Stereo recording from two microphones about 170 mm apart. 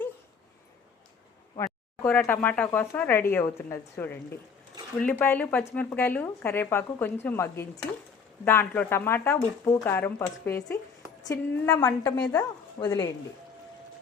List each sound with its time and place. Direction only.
1.5 s a woman's voice: 15° left (ahead or behind)